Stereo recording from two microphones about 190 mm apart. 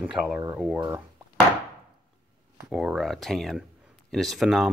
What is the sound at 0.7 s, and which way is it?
Speech, 15° right (ahead or behind).